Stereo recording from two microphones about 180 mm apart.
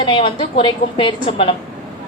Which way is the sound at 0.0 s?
30° left (ahead or behind).